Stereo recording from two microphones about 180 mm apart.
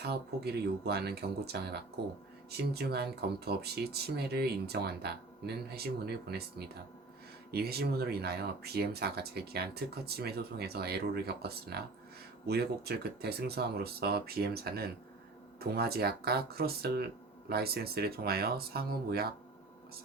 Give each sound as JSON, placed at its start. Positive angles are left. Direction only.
{"t": 0.0, "sound": "speech", "side_deg": -60}
{"t": 7.5, "sound": "speech", "side_deg": -60}